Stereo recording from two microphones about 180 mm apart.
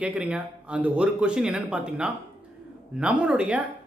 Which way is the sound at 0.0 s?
5° right (ahead or behind).